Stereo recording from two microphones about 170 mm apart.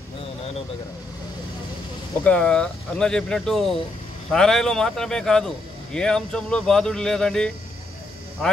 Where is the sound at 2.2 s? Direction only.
5° left (ahead or behind).